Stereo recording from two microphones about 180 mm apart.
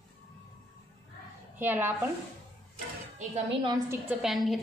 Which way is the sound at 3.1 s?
35° right (ahead or behind).